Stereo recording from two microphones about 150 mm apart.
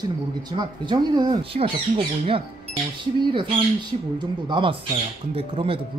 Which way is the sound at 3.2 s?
35° right (ahead or behind).